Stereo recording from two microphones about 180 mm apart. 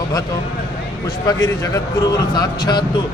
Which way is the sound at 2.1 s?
25° left (ahead or behind).